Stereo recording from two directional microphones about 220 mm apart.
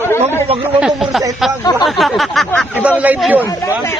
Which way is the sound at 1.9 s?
Centre (ahead or behind).